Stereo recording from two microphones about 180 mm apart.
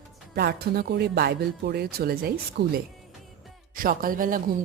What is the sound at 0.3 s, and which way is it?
Speech, 65° right (ahead or behind).